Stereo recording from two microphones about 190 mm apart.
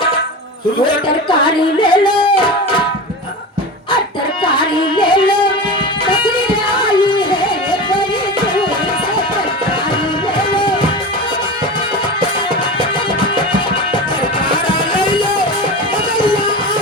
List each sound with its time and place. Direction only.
1.5 s speech: 25° left (ahead or behind)
4.5 s music: 25° left (ahead or behind)
6.7 s music: 25° left (ahead or behind)
14.5 s music: 25° left (ahead or behind)